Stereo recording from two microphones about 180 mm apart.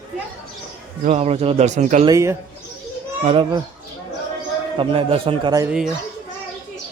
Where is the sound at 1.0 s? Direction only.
40° right (ahead or behind).